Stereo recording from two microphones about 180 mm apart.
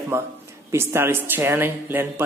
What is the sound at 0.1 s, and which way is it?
Speech, 15° right (ahead or behind).